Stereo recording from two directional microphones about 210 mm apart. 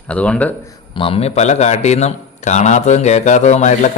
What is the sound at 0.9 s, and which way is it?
A man's voice, 25° left (ahead or behind).